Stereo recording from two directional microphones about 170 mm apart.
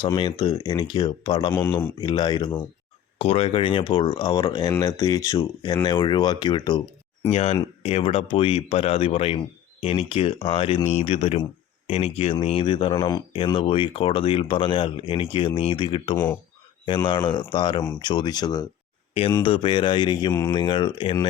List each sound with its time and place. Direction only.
0.0 s speech: 30° left (ahead or behind)
1.5 s speech: 15° left (ahead or behind)
3.2 s speech: 35° left (ahead or behind)
7.3 s speech: 35° left (ahead or behind)
16.1 s speech: 15° left (ahead or behind)
16.8 s speech: 30° left (ahead or behind)